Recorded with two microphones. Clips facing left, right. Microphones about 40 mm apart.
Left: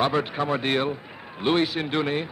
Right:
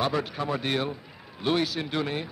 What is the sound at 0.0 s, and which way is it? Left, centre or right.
A man's voice, left.